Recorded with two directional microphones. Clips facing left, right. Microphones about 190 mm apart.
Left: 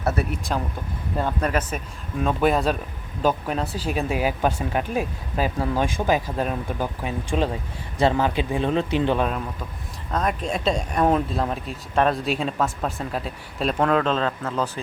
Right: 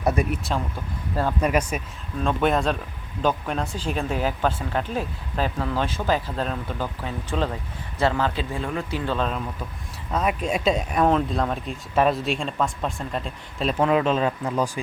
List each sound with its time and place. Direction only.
0.0 s speech: 15° right (ahead or behind)
2.2 s speech: centre (ahead or behind); by 9.2 s 20° left (ahead or behind)
10.1 s speech: 10° right (ahead or behind)
11.0 s speech: 5° left (ahead or behind); by 14.7 s 10° right (ahead or behind)